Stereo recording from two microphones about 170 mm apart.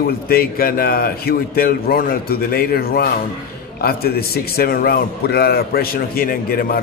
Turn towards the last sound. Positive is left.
turn(degrees=60)  # may be behind; listen again after turning